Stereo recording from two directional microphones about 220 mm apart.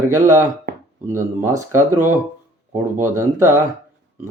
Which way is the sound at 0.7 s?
45° right (ahead or behind).